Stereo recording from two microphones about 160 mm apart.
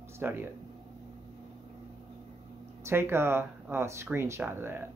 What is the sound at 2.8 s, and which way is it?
Speech, 15° right (ahead or behind).